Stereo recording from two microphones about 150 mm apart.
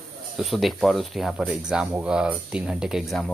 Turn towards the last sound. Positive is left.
turn(degrees=0)  # may be behind; listen again after turning